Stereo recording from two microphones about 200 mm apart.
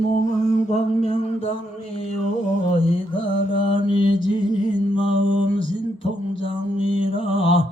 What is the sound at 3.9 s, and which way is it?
Mantra, 25° left (ahead or behind).